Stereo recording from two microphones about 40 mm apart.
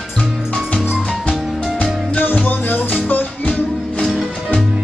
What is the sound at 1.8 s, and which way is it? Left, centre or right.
Music, left.